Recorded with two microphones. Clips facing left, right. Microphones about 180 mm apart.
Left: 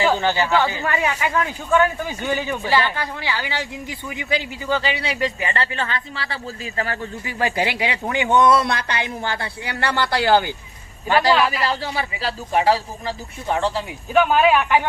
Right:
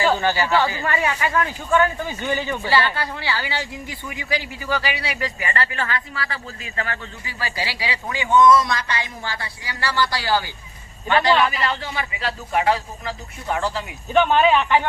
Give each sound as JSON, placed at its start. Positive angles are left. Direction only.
{"t": 0.0, "sound": "a man's voice", "side_deg": 15}
{"t": 7.3, "sound": "speech", "side_deg": 50}
{"t": 11.1, "sound": "a man's voice", "side_deg": 5}
{"t": 11.8, "sound": "a man's voice", "side_deg": 30}
{"t": 14.1, "sound": "speech", "side_deg": 5}